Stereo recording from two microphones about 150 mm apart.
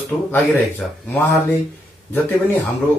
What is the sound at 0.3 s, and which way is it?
Speech, 15° left (ahead or behind).